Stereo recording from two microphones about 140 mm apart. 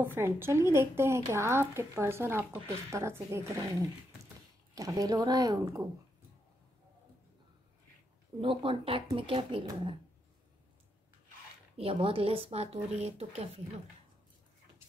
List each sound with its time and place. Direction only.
0.0 s a woman's voice: 15° right (ahead or behind)
8.4 s speech: 40° right (ahead or behind)
11.7 s speech: 45° right (ahead or behind)